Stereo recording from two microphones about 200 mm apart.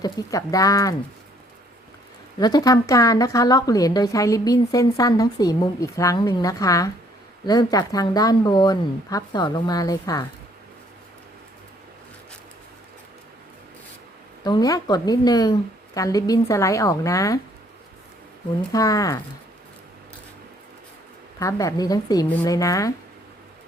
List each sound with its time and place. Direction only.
0.0 s speech: 15° left (ahead or behind)
2.4 s speech: 20° left (ahead or behind)
14.4 s speech: 20° left (ahead or behind)
18.7 s speech: 15° left (ahead or behind)
21.3 s speech: 15° left (ahead or behind)